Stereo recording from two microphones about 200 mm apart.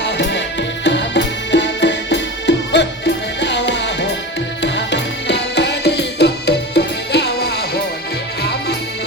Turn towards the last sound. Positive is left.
turn(degrees=55)  # may be behind; listen again after turning